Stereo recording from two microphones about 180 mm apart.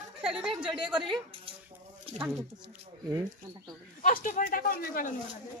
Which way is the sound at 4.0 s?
50° left (ahead or behind).